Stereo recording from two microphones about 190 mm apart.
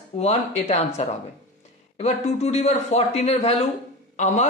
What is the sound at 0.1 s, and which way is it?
A man's voice, 35° left (ahead or behind).